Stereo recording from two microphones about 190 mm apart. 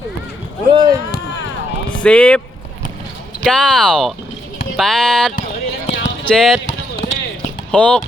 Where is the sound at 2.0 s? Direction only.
5° left (ahead or behind).